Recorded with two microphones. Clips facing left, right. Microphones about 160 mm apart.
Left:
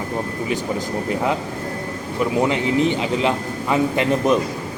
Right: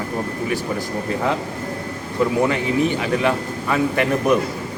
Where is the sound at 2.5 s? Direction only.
20° left (ahead or behind).